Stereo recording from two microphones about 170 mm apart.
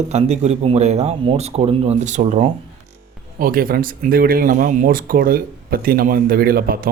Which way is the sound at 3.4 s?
60° right (ahead or behind).